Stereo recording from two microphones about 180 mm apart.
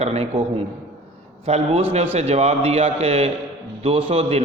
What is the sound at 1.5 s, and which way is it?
A man's voice, 35° right (ahead or behind).